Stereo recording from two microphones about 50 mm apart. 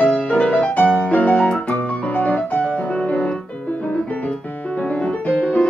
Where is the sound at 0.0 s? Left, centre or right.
Left.